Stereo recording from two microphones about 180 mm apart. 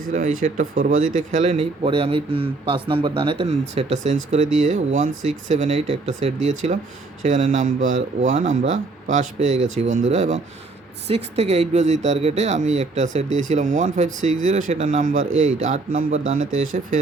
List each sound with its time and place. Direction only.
0.0 s speech: 45° right (ahead or behind)